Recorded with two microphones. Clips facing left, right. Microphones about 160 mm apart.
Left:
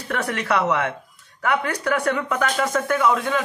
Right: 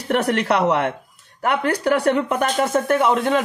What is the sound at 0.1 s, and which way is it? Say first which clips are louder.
Speech: right 5 dB; 30° right (ahead or behind).